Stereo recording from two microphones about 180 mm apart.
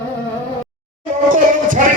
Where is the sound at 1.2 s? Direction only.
45° right (ahead or behind).